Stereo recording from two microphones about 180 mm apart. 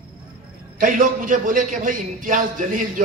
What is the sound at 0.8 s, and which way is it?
A man's voice, 50° right (ahead or behind).